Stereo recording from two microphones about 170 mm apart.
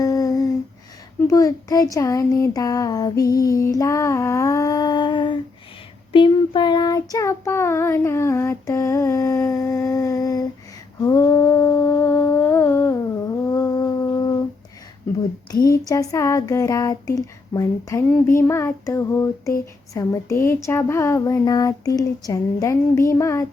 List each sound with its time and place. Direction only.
0.0 s humming: 20° left (ahead or behind)
1.3 s child singing: 20° left (ahead or behind)
3.5 s female singing: 20° left (ahead or behind)
6.1 s child singing: 30° left (ahead or behind)
11.0 s humming: 20° left (ahead or behind)
15.5 s speech: 60° left (ahead or behind)
15.8 s child singing: 20° left (ahead or behind)